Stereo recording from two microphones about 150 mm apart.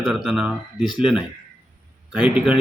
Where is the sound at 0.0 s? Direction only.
Centre (ahead or behind).